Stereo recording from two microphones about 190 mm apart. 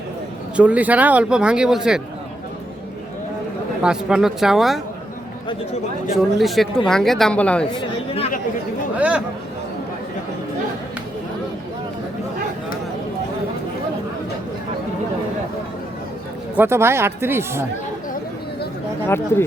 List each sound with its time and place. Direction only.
0.5 s speech: 5° right (ahead or behind)
3.8 s speech: 5° right (ahead or behind)
6.4 s speech: centre (ahead or behind)
7.7 s speech: 25° left (ahead or behind)
9.0 s speech: 5° right (ahead or behind)
16.6 s speech: 15° right (ahead or behind)
19.0 s speech: 10° left (ahead or behind)